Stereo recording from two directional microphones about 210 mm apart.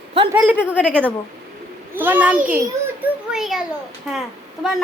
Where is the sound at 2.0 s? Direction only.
10° right (ahead or behind).